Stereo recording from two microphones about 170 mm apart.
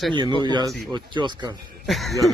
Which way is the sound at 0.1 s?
30° right (ahead or behind).